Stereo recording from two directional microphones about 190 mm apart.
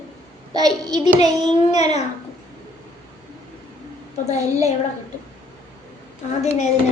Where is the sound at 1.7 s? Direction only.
35° left (ahead or behind).